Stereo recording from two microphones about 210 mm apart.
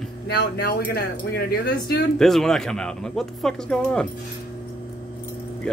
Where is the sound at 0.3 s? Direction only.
50° left (ahead or behind).